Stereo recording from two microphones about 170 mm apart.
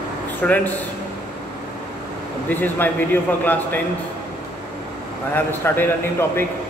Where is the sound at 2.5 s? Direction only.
10° left (ahead or behind).